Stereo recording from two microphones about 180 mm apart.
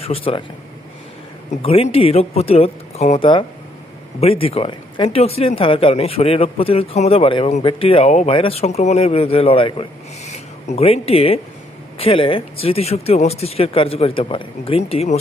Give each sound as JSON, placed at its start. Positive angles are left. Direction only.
{"t": 0.0, "sound": "speech", "side_deg": 30}
{"t": 1.6, "sound": "speech", "side_deg": 35}
{"t": 10.2, "sound": "a sound", "side_deg": 35}
{"t": 11.9, "sound": "speech", "side_deg": 30}